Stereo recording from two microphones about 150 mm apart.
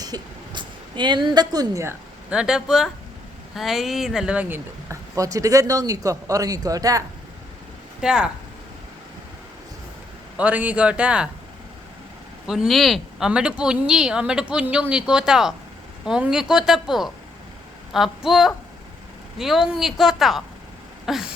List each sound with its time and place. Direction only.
0.0 s a woman's voice: 30° right (ahead or behind)
2.3 s speech: 5° right (ahead or behind); by 7.0 s 25° right (ahead or behind)
8.0 s speech: 5° right (ahead or behind)
10.3 s a man's voice: 10° right (ahead or behind)
12.5 s speech: centre (ahead or behind)